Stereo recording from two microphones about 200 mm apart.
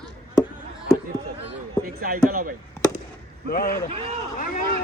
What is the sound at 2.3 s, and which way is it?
Speech, 45° right (ahead or behind).